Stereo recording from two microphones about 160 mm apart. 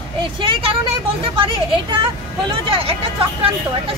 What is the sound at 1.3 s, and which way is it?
Speech, 35° right (ahead or behind).